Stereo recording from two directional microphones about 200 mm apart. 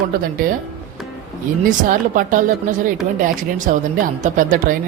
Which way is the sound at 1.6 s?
40° right (ahead or behind).